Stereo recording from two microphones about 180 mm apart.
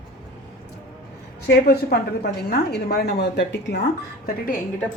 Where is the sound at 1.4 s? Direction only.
60° left (ahead or behind).